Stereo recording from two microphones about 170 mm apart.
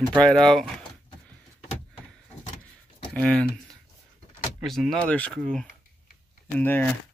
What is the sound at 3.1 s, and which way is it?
Speech, 5° left (ahead or behind).